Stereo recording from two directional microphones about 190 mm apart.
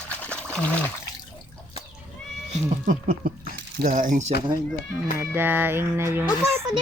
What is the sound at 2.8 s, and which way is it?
Speech, 50° right (ahead or behind).